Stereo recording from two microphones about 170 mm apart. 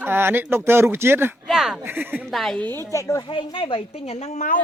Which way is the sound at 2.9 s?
20° left (ahead or behind).